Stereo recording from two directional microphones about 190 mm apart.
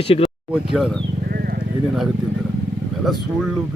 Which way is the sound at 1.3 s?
55° right (ahead or behind).